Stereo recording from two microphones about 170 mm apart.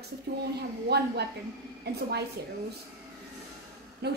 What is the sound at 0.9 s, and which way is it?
A woman's voice, 75° right (ahead or behind).